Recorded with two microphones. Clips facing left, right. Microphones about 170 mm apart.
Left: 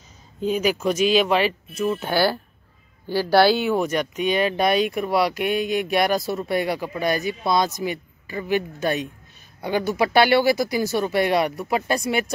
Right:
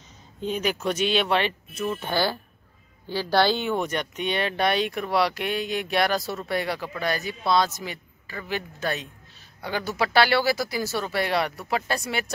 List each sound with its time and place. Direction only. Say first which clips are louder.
0.4 s speech: left 5 dB; 10° left (ahead or behind)